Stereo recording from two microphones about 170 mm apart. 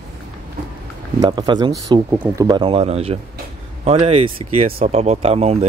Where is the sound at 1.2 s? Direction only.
25° right (ahead or behind).